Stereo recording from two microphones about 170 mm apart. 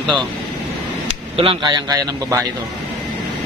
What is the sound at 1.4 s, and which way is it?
A man's voice, 30° right (ahead or behind).